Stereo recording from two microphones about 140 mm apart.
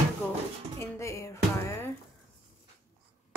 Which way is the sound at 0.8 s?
20° left (ahead or behind).